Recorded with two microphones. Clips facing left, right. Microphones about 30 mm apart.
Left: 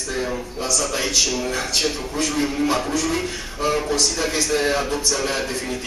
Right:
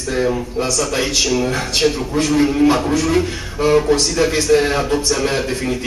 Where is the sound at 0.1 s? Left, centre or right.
Centre.